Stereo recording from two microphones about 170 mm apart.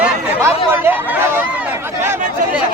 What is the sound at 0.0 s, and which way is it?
Chatter, 10° right (ahead or behind).